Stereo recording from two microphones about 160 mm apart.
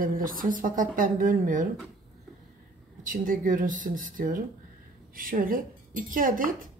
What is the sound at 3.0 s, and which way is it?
Speech, 55° right (ahead or behind).